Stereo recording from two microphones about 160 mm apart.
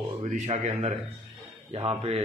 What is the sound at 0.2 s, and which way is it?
Speech, 50° right (ahead or behind).